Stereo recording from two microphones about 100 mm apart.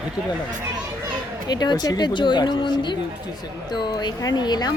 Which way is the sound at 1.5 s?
45° left (ahead or behind).